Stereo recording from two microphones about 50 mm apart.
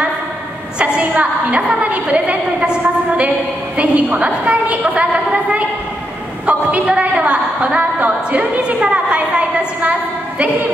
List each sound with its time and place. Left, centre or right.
0.7 s a woman's voice: right